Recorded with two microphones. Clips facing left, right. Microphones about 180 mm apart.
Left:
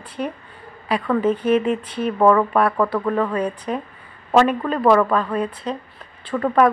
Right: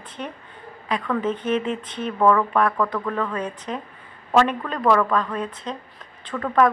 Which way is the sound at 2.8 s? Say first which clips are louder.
Left 4 dB; 30° left (ahead or behind).